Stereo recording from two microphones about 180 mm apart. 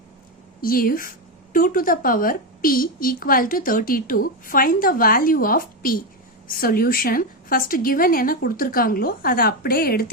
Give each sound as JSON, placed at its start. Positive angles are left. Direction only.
{"t": 0.6, "sound": "a woman's voice", "side_deg": 55}